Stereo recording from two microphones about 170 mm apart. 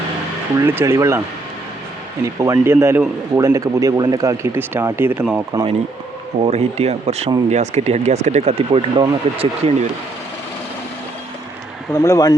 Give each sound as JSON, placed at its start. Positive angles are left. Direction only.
{"t": 0.6, "sound": "a man's voice", "side_deg": -15}
{"t": 2.2, "sound": "a man's voice", "side_deg": -20}
{"t": 6.4, "sound": "speech", "side_deg": -40}
{"t": 11.9, "sound": "speech", "side_deg": 20}